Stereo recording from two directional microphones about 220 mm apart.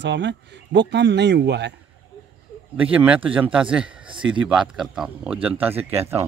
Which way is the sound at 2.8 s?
5° right (ahead or behind).